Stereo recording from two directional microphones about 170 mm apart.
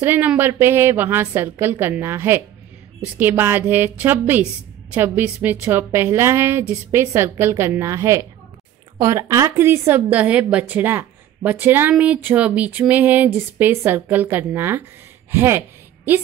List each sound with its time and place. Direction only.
0.0 s a woman's voice: 10° right (ahead or behind)